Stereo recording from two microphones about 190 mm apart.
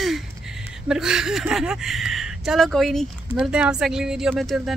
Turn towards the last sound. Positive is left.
turn(degrees=0)  # may be behind; listen again after turning